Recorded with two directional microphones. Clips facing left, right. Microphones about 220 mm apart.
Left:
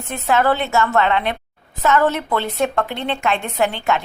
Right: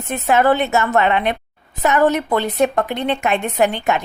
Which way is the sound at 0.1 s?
20° right (ahead or behind).